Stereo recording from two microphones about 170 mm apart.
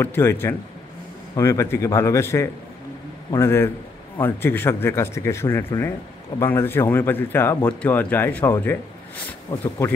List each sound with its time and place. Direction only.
0.0 s speech: 15° left (ahead or behind)